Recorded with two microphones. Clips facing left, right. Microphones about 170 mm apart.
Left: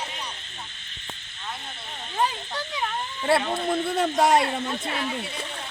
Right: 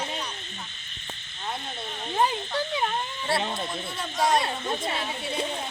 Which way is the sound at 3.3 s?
60° left (ahead or behind).